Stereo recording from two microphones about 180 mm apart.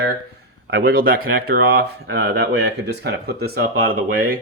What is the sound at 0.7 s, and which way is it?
Speech, 60° right (ahead or behind).